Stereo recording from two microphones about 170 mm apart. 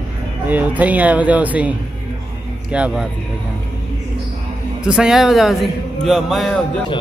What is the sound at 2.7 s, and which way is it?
Speech, 5° right (ahead or behind).